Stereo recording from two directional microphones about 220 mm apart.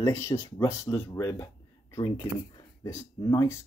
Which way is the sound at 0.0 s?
15° left (ahead or behind).